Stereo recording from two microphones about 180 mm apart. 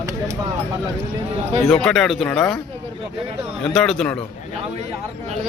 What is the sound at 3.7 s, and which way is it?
Speech, centre (ahead or behind).